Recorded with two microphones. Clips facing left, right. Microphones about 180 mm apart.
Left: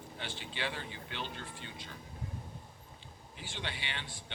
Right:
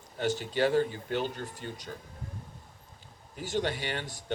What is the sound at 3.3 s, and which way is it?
Speech, 45° right (ahead or behind).